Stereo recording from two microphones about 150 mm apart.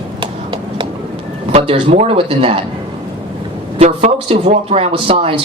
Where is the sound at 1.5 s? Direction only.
40° right (ahead or behind).